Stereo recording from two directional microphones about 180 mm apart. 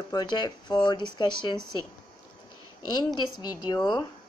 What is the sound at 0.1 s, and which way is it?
Speech, 25° left (ahead or behind).